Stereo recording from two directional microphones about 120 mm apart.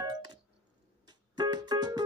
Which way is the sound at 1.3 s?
35° right (ahead or behind).